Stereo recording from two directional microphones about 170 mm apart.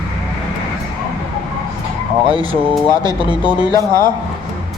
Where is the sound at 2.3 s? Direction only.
35° right (ahead or behind).